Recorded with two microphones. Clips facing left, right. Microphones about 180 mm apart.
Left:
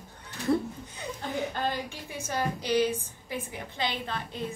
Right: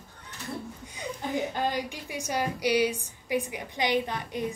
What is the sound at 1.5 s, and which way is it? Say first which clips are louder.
A woman's voice: right 2 dB; 15° right (ahead or behind).